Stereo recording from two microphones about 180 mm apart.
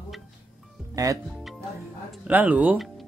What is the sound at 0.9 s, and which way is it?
Speech, 20° right (ahead or behind).